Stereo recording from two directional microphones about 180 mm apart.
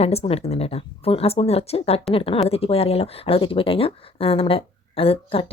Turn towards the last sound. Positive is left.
turn(degrees=30)  # may be behind; listen again after turning